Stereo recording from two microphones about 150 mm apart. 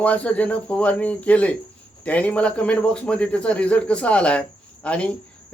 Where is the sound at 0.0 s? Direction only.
10° left (ahead or behind).